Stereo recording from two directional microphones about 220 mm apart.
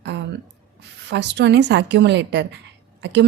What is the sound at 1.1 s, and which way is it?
Speech, 50° right (ahead or behind).